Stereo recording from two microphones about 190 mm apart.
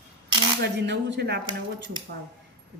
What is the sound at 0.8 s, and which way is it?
Speech, 65° right (ahead or behind).